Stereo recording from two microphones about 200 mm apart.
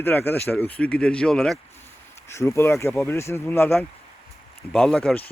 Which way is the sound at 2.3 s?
15° left (ahead or behind).